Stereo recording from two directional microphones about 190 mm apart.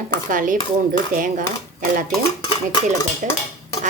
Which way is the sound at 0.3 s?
45° right (ahead or behind).